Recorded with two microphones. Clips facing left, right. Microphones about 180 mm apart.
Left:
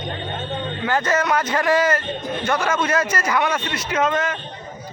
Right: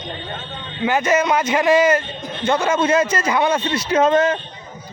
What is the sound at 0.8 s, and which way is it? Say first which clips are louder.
A man's voice: right 4 dB; 15° right (ahead or behind).